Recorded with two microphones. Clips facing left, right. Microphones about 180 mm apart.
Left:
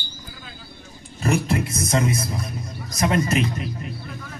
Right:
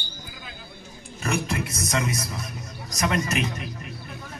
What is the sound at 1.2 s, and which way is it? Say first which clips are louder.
A man's voice: left 5 dB; 30° left (ahead or behind).